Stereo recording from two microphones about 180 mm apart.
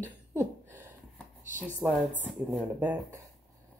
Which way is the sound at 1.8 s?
15° right (ahead or behind).